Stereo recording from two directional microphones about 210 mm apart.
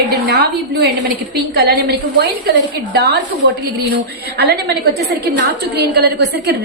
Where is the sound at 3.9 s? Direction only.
50° right (ahead or behind).